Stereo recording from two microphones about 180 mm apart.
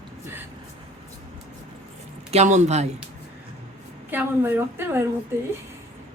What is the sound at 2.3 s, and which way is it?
Speech, 40° right (ahead or behind).